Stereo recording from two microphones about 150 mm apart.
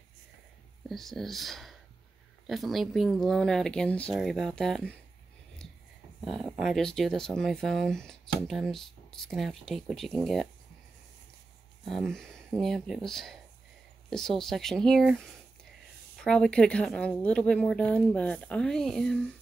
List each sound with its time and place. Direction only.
0.8 s speech: centre (ahead or behind)
6.2 s speech: centre (ahead or behind)
11.9 s speech: 5° left (ahead or behind)
16.3 s speech: 5° left (ahead or behind)